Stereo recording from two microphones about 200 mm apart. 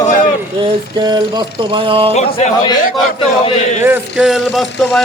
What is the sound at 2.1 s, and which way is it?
Speech, 35° left (ahead or behind).